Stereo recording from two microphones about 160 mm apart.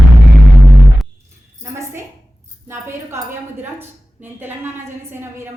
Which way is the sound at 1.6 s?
15° right (ahead or behind).